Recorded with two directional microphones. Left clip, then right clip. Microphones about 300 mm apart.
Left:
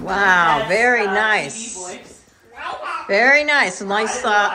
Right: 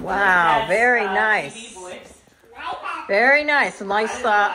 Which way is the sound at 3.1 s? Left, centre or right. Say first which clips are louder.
Left 2 dB; centre.